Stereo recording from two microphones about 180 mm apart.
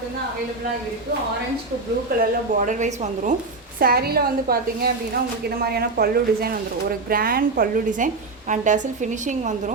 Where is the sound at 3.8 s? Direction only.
60° right (ahead or behind).